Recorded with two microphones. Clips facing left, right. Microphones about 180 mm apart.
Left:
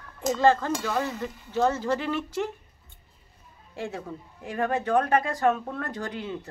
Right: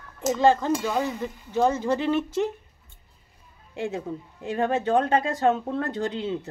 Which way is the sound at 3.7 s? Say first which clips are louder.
Right 4 dB; 20° right (ahead or behind).